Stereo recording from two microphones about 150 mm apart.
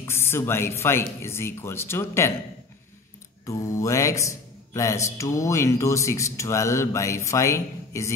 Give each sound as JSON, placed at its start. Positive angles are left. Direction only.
{"t": 0.0, "sound": "speech", "side_deg": 15}
{"t": 3.4, "sound": "speech", "side_deg": 20}